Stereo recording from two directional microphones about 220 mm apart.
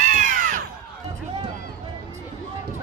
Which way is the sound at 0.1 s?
35° right (ahead or behind).